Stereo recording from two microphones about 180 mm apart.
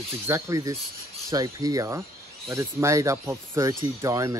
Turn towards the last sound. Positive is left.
turn(degrees=-20)  # may be behind; listen again after turning